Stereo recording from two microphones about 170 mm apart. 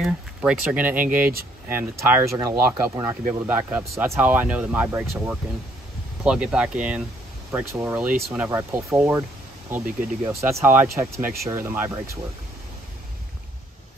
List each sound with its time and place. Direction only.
0.0 s speech: 5° right (ahead or behind)